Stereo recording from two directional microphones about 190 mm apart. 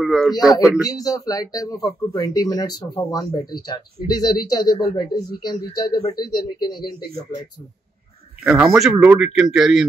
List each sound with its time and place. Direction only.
0.0 s a sound: centre (ahead or behind)
0.8 s speech: 20° left (ahead or behind)
8.5 s speech: 5° right (ahead or behind)